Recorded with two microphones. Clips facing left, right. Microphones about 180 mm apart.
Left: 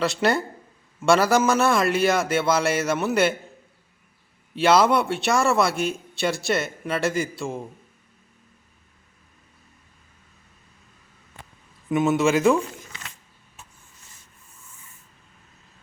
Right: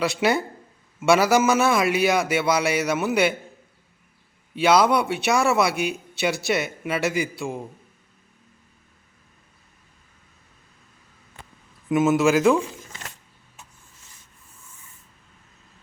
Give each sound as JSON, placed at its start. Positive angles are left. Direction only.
{"t": 0.0, "sound": "a man's voice", "side_deg": 0}
{"t": 4.5, "sound": "a man's voice", "side_deg": 0}
{"t": 11.9, "sound": "a man's voice", "side_deg": 0}
{"t": 12.9, "sound": "a sound", "side_deg": -45}